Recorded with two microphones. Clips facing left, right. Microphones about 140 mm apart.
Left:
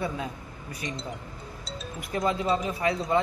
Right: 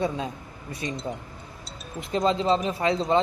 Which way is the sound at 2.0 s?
25° right (ahead or behind).